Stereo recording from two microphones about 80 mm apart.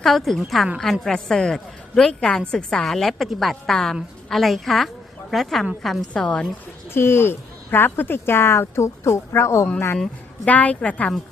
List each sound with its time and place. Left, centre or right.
0.0 s a woman's voice: centre
6.9 s speech: left
10.4 s a woman's voice: centre